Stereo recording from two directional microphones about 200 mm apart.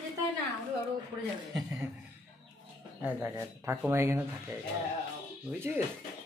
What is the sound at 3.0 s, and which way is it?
Speech, 10° right (ahead or behind).